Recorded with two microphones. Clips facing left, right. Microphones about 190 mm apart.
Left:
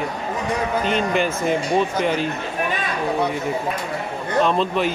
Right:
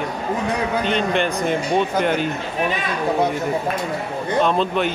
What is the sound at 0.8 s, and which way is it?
Speech, 5° left (ahead or behind).